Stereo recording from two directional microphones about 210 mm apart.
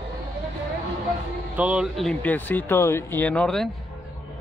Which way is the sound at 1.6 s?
5° right (ahead or behind).